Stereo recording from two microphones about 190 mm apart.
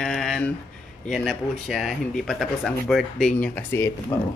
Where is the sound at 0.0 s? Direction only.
Centre (ahead or behind).